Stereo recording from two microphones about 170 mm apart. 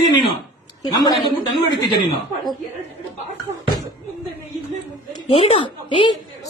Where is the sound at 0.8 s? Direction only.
20° left (ahead or behind).